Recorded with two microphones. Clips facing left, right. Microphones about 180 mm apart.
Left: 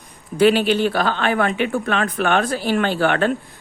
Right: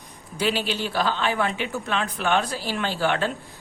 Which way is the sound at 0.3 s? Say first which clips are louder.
Left 10 dB; 55° left (ahead or behind).